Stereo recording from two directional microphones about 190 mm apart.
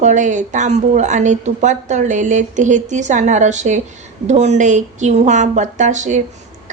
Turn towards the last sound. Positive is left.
turn(degrees=-40)  # may be behind; listen again after turning